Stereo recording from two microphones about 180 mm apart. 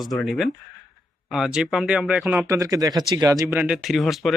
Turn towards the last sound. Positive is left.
turn(degrees=0)  # may be behind; listen again after turning